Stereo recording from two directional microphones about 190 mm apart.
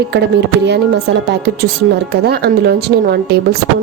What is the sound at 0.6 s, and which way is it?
A woman's voice, 65° right (ahead or behind).